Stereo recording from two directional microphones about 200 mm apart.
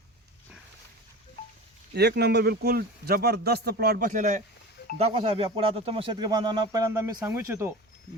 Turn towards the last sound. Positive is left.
turn(degrees=-15)  # may be behind; listen again after turning